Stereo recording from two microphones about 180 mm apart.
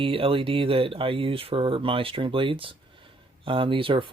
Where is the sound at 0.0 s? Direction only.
30° right (ahead or behind).